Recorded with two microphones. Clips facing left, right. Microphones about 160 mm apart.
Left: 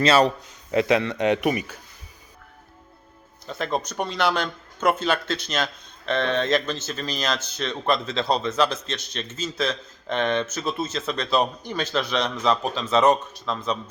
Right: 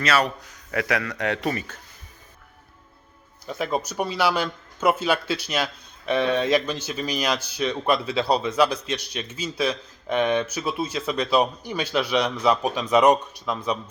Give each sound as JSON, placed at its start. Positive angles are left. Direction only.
{"t": 0.0, "sound": "a man's voice", "side_deg": 30}
{"t": 3.4, "sound": "speech", "side_deg": -10}